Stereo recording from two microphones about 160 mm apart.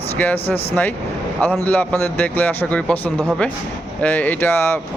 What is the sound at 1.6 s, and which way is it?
Speech, 10° left (ahead or behind).